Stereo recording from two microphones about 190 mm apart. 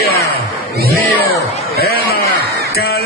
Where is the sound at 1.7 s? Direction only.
55° left (ahead or behind).